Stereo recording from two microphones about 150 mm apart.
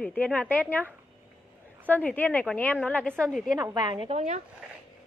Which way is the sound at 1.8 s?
10° left (ahead or behind).